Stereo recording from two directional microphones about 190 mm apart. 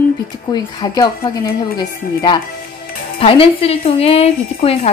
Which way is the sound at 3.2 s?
30° left (ahead or behind).